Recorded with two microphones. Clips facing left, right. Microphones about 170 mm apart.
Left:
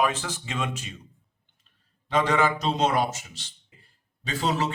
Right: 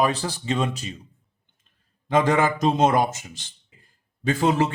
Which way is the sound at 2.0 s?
50° right (ahead or behind).